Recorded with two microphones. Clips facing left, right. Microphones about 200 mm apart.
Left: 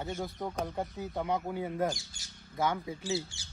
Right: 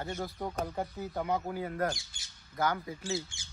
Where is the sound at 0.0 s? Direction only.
Centre (ahead or behind).